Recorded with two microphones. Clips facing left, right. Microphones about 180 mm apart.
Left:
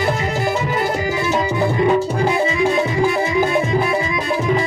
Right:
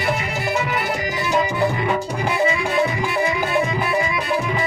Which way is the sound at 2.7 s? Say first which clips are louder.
Left 4 dB; 30° left (ahead or behind).